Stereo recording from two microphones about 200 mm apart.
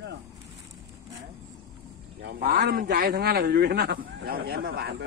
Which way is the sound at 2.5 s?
50° right (ahead or behind).